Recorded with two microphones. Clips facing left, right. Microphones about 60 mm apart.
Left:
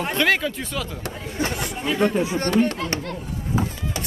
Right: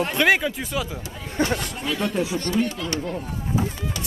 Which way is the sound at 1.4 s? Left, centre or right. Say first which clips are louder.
Right 3 dB; right.